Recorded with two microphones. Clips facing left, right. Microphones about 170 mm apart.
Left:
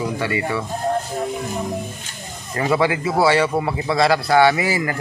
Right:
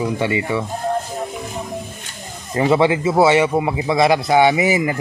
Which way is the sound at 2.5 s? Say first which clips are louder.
Right 4 dB; 25° right (ahead or behind).